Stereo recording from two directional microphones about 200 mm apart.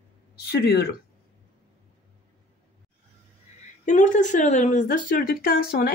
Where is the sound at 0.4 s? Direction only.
55° left (ahead or behind).